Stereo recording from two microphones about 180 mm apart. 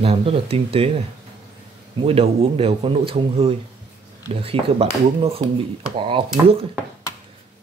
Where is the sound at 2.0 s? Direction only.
30° right (ahead or behind).